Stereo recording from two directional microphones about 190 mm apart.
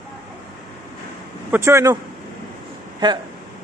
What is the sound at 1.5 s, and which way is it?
Speech, 15° right (ahead or behind).